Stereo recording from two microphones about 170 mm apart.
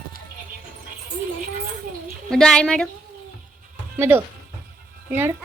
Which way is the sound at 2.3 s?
5° left (ahead or behind).